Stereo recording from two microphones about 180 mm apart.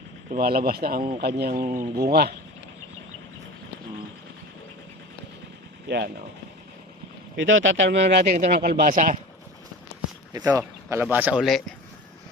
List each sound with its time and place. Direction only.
0.3 s a man's voice: 55° right (ahead or behind)
5.9 s speech: 75° right (ahead or behind)
7.3 s speech: 90° right
8.3 s speech: 55° right (ahead or behind)
10.3 s speech: 10° right (ahead or behind)